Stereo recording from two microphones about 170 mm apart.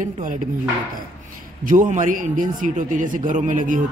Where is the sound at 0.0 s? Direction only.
50° right (ahead or behind).